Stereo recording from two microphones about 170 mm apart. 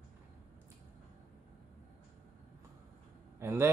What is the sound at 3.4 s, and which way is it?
Speech, 15° right (ahead or behind).